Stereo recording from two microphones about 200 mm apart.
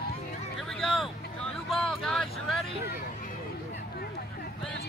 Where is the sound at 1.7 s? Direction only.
Centre (ahead or behind).